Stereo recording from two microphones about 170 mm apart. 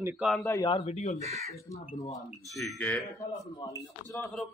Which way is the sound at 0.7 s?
40° left (ahead or behind).